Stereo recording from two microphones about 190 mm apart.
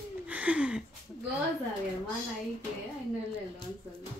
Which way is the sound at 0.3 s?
5° right (ahead or behind).